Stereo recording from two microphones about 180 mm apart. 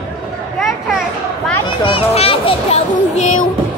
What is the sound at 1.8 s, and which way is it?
A child's voice, 30° left (ahead or behind).